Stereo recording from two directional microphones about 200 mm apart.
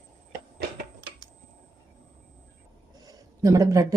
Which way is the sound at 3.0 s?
20° right (ahead or behind).